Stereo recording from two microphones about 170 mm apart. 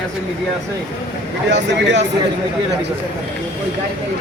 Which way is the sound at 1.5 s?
90° right.